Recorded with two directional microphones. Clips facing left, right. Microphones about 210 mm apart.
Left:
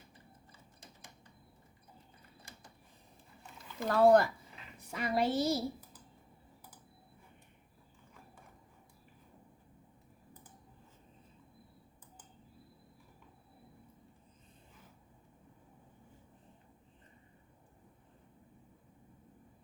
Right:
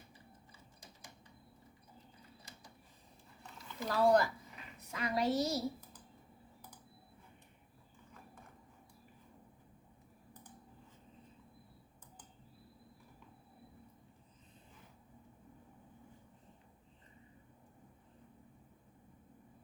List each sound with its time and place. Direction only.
3.8 s speech: 55° left (ahead or behind)
4.8 s a woman's voice: 30° left (ahead or behind)